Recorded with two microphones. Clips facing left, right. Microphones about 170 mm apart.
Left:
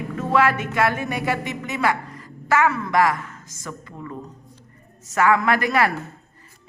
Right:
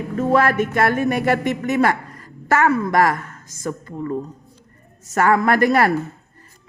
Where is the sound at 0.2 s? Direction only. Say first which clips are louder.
Right 3 dB; 45° right (ahead or behind).